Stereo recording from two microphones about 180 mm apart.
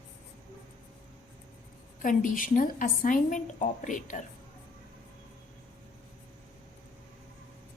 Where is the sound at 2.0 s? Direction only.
50° left (ahead or behind).